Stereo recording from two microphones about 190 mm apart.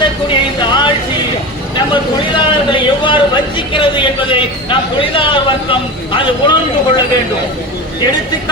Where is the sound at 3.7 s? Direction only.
25° left (ahead or behind).